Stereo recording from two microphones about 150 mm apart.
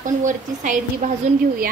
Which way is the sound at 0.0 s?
55° right (ahead or behind).